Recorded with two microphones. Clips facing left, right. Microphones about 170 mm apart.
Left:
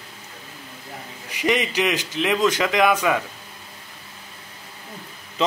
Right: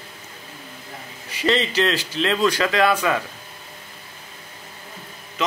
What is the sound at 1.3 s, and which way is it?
Speech, 15° left (ahead or behind).